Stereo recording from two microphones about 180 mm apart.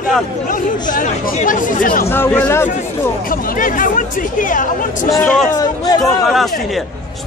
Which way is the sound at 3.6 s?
50° left (ahead or behind).